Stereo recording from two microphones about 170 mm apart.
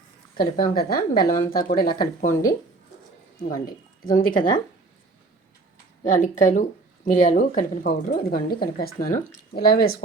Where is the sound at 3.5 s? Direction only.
55° left (ahead or behind).